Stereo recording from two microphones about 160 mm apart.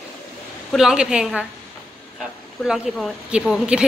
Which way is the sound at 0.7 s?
5° right (ahead or behind).